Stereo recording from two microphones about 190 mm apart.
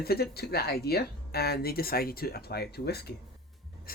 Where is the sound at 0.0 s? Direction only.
55° left (ahead or behind).